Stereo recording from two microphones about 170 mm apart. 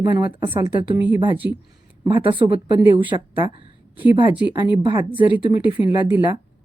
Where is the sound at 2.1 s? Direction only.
30° right (ahead or behind).